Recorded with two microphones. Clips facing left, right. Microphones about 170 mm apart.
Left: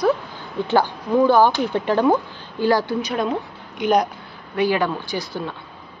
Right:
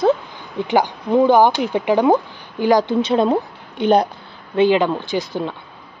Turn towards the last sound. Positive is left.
turn(degrees=-20)  # may be behind; listen again after turning